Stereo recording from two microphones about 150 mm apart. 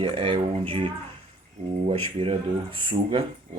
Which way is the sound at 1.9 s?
40° right (ahead or behind).